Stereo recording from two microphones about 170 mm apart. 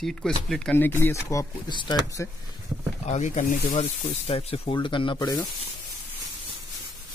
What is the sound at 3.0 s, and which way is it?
Speech, 45° left (ahead or behind).